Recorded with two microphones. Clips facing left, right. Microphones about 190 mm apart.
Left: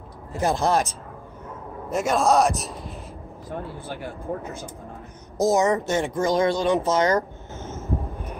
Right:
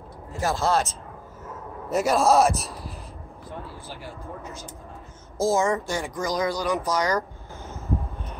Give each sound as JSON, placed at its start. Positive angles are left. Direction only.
{"t": 0.4, "sound": "speech", "side_deg": 15}
{"t": 1.9, "sound": "a man's voice", "side_deg": 0}
{"t": 3.4, "sound": "speech", "side_deg": 55}
{"t": 5.4, "sound": "a woman's voice", "side_deg": 20}